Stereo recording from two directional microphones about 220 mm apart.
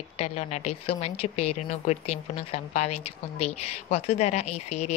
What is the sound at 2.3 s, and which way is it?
A woman's voice, 30° left (ahead or behind).